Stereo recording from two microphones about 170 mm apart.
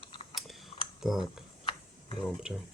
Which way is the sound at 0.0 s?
30° left (ahead or behind).